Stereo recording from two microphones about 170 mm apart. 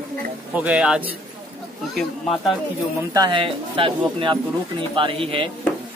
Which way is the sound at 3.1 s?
25° right (ahead or behind).